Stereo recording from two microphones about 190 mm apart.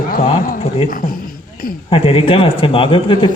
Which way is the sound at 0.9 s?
45° left (ahead or behind).